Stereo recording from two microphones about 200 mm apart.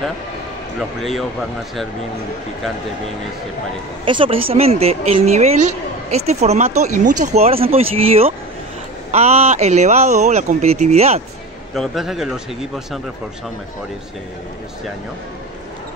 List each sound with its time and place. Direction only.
4.0 s speech: 25° right (ahead or behind)
11.7 s speech: centre (ahead or behind)